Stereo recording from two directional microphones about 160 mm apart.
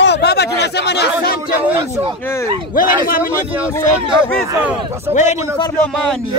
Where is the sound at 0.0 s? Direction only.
90° left.